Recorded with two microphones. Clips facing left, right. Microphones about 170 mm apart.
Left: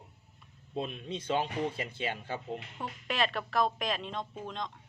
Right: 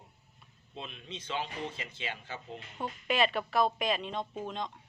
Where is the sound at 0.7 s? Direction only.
45° left (ahead or behind).